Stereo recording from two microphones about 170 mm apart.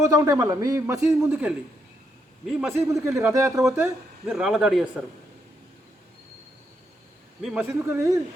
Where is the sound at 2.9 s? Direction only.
15° right (ahead or behind).